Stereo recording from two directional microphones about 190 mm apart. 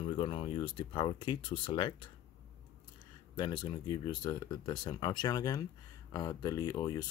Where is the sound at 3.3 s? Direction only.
25° left (ahead or behind).